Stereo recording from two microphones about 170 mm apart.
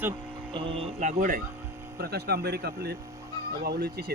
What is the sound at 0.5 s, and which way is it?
Speech, 35° right (ahead or behind).